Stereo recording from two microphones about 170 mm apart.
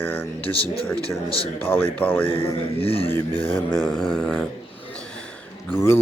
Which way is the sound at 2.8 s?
35° left (ahead or behind).